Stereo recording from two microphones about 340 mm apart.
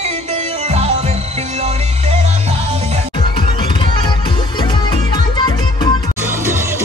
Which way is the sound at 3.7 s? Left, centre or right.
Centre.